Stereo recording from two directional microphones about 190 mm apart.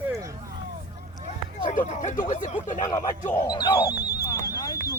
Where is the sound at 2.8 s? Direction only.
15° left (ahead or behind).